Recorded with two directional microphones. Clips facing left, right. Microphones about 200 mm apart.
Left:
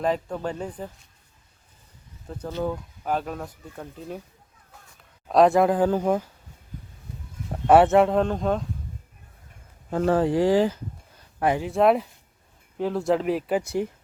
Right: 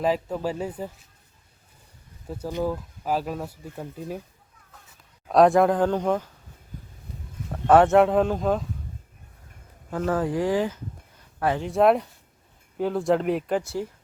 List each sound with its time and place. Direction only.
0.0 s speech: 5° right (ahead or behind)
2.2 s speech: 10° right (ahead or behind)
5.3 s speech: centre (ahead or behind)
7.7 s speech: 5° left (ahead or behind)
10.1 s speech: 30° left (ahead or behind)
11.3 s speech: 15° left (ahead or behind)
11.6 s speech: centre (ahead or behind)
13.6 s speech: 15° left (ahead or behind)